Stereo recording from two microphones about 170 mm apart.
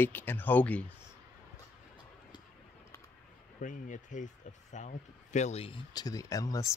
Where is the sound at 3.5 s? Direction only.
50° left (ahead or behind).